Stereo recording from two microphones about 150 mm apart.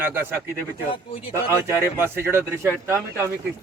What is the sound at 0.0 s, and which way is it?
Speech, 15° right (ahead or behind).